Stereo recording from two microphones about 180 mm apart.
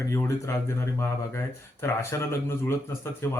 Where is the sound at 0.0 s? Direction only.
15° left (ahead or behind).